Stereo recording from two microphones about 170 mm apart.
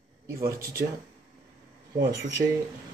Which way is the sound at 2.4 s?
55° right (ahead or behind).